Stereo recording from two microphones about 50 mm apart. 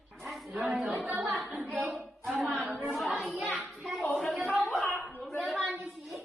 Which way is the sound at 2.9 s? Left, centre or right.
Centre.